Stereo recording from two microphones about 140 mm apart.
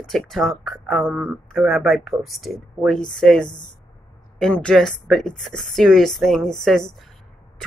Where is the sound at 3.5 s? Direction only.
30° left (ahead or behind).